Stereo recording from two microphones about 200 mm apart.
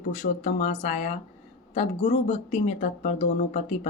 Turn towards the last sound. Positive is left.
turn(degrees=35)  # may be behind; listen again after turning